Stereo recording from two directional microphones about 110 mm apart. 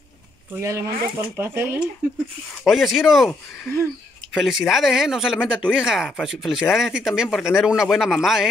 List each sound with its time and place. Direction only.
0.6 s speech: 25° right (ahead or behind)
2.6 s speech: centre (ahead or behind)